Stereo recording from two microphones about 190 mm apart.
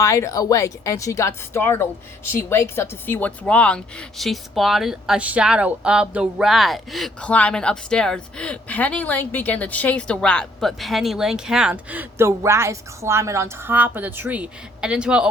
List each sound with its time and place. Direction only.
0.0 s speech: 15° left (ahead or behind); by 15.3 s 5° right (ahead or behind)